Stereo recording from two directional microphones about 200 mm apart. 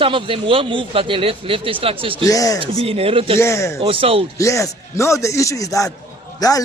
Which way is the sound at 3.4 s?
15° left (ahead or behind).